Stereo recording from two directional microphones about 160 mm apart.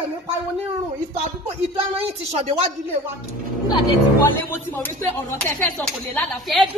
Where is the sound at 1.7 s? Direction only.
40° right (ahead or behind).